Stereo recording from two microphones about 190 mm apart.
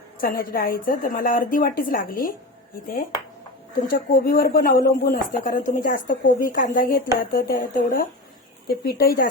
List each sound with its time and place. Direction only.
0.2 s speech: 45° left (ahead or behind)
3.8 s speech: 50° left (ahead or behind)